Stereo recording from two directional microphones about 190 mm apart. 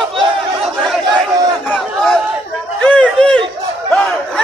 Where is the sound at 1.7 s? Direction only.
Centre (ahead or behind).